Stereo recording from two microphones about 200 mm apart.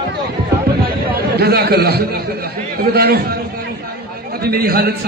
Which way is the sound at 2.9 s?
50° right (ahead or behind).